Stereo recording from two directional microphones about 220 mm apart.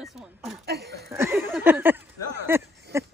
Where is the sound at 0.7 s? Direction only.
45° right (ahead or behind).